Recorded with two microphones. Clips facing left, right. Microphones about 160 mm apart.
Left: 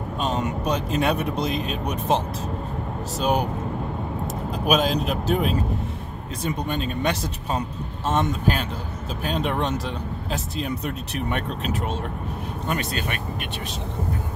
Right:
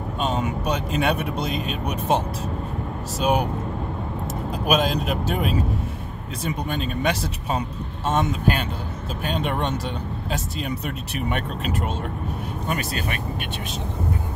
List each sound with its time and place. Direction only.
0.2 s speech: centre (ahead or behind)
3.2 s speech: centre (ahead or behind)
4.6 s speech: centre (ahead or behind)
11.1 s speech: 5° right (ahead or behind)
12.7 s speech: 45° right (ahead or behind)